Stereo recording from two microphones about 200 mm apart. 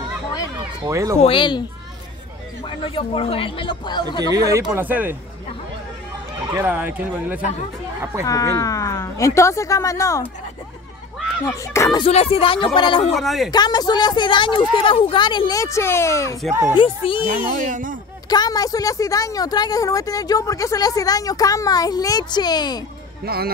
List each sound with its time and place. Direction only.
0.8 s speech: 15° right (ahead or behind)
1.2 s a woman's voice: 25° left (ahead or behind)
2.6 s a woman's voice: 25° left (ahead or behind)
4.2 s speech: 15° right (ahead or behind)
6.5 s speech: 10° right (ahead or behind)
8.3 s a woman's voice: 15° left (ahead or behind)
11.4 s a woman's voice: 15° left (ahead or behind)
12.0 s a woman's voice: 30° left (ahead or behind)
13.1 s speech: centre (ahead or behind)
13.5 s a woman's voice: 20° left (ahead or behind)
16.7 s a woman's voice: 25° left (ahead or behind)
17.6 s speech: 40° right (ahead or behind)
18.3 s a woman's voice: 20° left (ahead or behind)
23.2 s speech: 50° right (ahead or behind)